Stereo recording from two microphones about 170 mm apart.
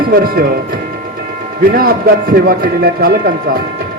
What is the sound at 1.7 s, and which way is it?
Speech, 60° right (ahead or behind).